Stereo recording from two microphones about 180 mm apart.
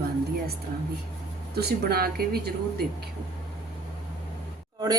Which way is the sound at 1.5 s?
60° right (ahead or behind).